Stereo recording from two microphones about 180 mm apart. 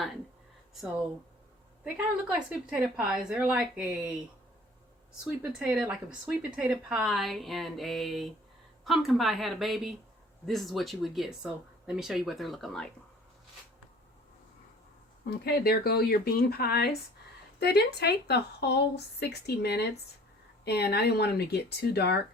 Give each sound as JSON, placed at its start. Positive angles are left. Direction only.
{"t": 1.8, "sound": "speech", "side_deg": -5}
{"t": 5.4, "sound": "speech", "side_deg": -5}
{"t": 15.3, "sound": "speech", "side_deg": 60}